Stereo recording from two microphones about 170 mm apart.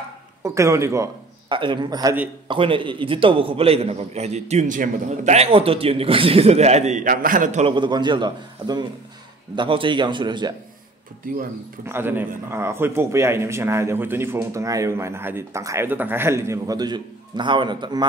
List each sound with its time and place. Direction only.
0.4 s speech: 15° right (ahead or behind)
1.5 s a man's voice: 30° right (ahead or behind); by 7.6 s 50° right (ahead or behind)
7.6 s a man's voice: 30° right (ahead or behind)
11.8 s speech: 15° right (ahead or behind)